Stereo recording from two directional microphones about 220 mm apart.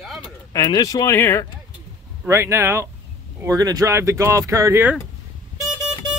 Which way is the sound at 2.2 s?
10° right (ahead or behind).